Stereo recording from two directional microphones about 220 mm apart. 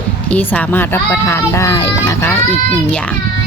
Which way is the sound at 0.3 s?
5° left (ahead or behind).